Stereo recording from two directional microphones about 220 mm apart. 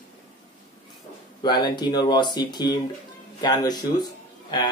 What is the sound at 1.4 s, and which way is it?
Speech, 20° left (ahead or behind).